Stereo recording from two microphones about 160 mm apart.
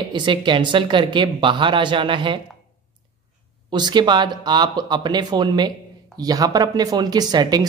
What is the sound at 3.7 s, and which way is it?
Speech, 30° right (ahead or behind).